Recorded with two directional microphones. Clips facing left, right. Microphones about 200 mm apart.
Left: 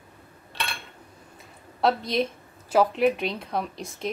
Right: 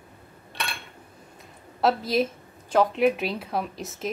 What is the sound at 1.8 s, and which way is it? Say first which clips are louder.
A woman's voice: right 1 dB; 5° right (ahead or behind).